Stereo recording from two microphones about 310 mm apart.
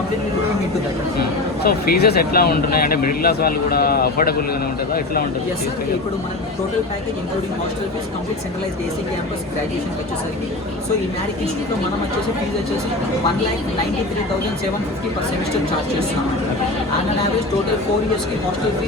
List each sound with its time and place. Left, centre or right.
1.6 s speech: left